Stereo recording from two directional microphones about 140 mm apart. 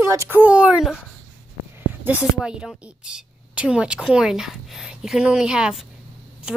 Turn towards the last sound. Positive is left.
turn(degrees=-5)  # may be behind; listen again after turning